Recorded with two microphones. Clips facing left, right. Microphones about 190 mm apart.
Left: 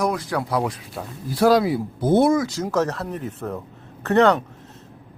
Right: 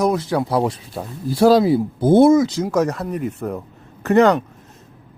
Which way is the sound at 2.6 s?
10° right (ahead or behind).